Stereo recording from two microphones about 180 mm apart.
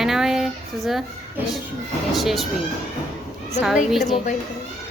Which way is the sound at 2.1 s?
Centre (ahead or behind).